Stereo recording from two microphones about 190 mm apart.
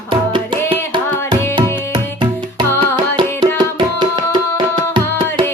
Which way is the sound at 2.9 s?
20° right (ahead or behind).